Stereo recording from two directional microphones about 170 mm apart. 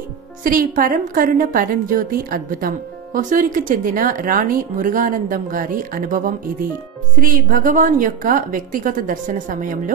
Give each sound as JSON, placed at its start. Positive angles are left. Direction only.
{"t": 0.4, "sound": "a woman's voice", "side_deg": -55}